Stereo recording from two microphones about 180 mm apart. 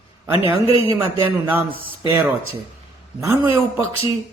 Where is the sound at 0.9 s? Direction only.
10° right (ahead or behind).